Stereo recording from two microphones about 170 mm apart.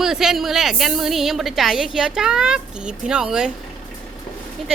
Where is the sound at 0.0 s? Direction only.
5° right (ahead or behind).